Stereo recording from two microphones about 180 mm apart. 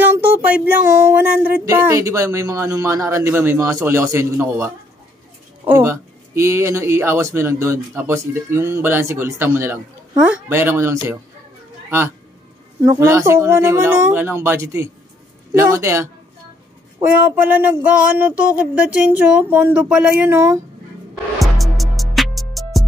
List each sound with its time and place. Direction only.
0.0 s speech: 10° right (ahead or behind)
12.8 s speech: 15° right (ahead or behind)
21.4 s music: centre (ahead or behind)